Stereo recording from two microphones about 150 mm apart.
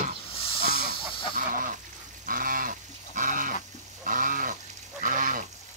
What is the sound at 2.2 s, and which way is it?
Livestock, 65° right (ahead or behind).